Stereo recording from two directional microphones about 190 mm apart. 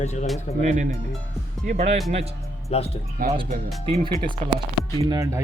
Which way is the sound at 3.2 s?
50° right (ahead or behind).